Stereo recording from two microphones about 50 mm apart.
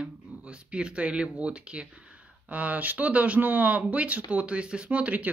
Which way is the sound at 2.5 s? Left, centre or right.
Right.